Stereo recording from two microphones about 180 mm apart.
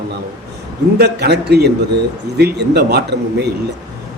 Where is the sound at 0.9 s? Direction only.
65° right (ahead or behind).